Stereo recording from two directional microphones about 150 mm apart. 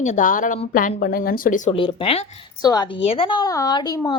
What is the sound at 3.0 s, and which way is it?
Speech, 40° left (ahead or behind).